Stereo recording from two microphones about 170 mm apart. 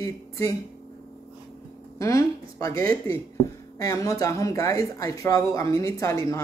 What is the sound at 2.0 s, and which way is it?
Speech, 20° left (ahead or behind).